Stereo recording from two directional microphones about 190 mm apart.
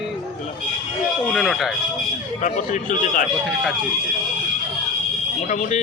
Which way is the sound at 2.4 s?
40° left (ahead or behind).